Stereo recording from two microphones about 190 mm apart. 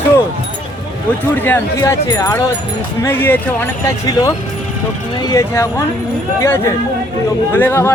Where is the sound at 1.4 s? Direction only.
10° left (ahead or behind).